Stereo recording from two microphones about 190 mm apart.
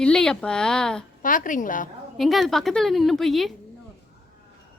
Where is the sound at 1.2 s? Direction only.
45° left (ahead or behind).